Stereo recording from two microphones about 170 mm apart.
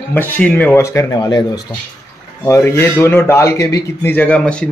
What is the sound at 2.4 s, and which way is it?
Speech, 15° left (ahead or behind).